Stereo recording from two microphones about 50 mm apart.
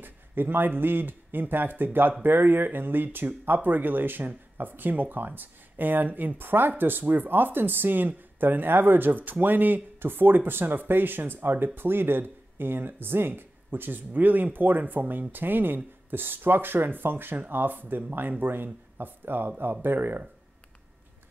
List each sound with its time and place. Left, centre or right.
0.0 s speech: right